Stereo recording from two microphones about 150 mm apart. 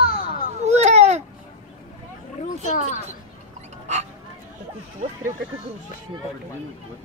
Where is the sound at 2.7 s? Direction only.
55° left (ahead or behind).